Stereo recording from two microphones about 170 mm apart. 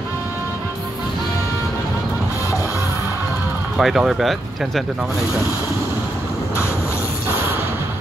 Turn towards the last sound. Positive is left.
turn(degrees=15)  # may be behind; listen again after turning